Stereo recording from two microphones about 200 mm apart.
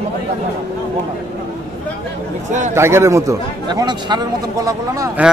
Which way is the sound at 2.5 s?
40° right (ahead or behind).